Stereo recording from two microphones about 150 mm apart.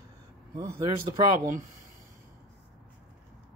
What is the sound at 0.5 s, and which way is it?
Speech, 25° right (ahead or behind).